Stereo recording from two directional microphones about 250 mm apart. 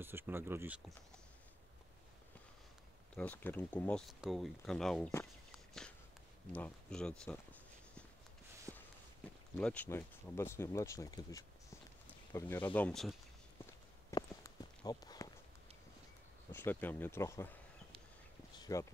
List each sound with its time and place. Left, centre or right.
0.0 s speech: centre
3.2 s speech: centre
8.7 s walk: centre
9.6 s speech: centre
14.1 s walk: centre
16.5 s speech: centre
18.6 s a sound: centre